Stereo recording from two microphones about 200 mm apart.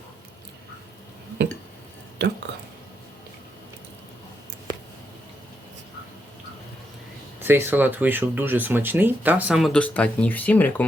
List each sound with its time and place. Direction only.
2.2 s speech: 60° right (ahead or behind)
7.4 s speech: 10° right (ahead or behind); by 10.8 s 10° left (ahead or behind)